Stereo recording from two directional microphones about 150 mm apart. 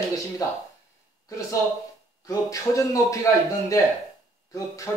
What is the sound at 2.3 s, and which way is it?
A man's voice, 20° left (ahead or behind).